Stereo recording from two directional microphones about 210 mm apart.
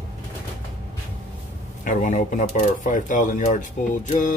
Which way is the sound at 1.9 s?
35° left (ahead or behind).